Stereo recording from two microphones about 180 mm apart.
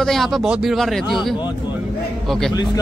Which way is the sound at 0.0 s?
Centre (ahead or behind).